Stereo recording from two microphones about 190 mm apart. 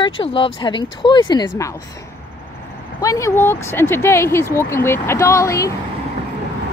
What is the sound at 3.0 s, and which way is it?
Speech, 15° left (ahead or behind).